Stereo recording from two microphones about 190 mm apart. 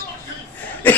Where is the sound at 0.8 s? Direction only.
10° left (ahead or behind).